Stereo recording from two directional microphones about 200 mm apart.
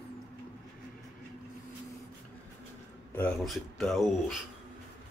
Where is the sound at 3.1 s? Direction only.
5° left (ahead or behind).